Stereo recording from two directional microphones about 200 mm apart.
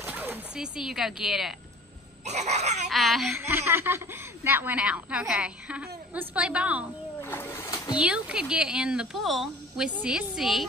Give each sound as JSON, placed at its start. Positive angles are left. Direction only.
{"t": 0.0, "sound": "speech", "side_deg": -10}
{"t": 2.2, "sound": "baby cry", "side_deg": -35}
{"t": 2.9, "sound": "a woman's voice", "side_deg": 0}
{"t": 3.3, "sound": "a woman's voice", "side_deg": -10}
{"t": 7.2, "sound": "splash", "side_deg": 10}
{"t": 8.0, "sound": "a woman's voice", "side_deg": -5}